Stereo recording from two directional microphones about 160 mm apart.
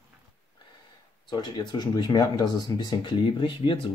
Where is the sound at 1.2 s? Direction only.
30° left (ahead or behind).